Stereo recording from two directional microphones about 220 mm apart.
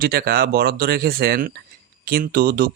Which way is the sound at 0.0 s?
45° right (ahead or behind).